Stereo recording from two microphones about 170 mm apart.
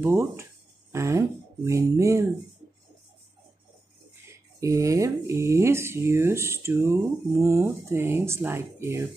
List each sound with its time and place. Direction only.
0.0 s speech: 15° right (ahead or behind)
4.6 s speech: 20° right (ahead or behind)